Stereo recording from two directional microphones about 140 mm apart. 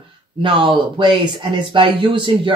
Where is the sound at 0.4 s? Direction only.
35° right (ahead or behind).